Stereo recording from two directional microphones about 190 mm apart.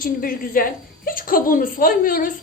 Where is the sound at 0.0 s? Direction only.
45° left (ahead or behind).